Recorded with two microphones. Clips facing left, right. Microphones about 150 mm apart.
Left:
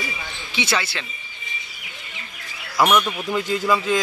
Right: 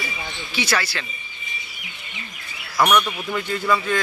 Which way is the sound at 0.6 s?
25° left (ahead or behind).